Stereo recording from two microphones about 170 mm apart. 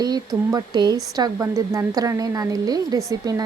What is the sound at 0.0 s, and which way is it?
A woman's voice, 25° right (ahead or behind).